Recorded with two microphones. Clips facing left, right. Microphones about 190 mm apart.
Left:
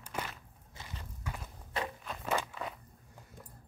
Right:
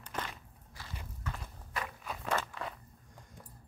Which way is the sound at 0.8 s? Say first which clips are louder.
Right 1 dB; 20° left (ahead or behind).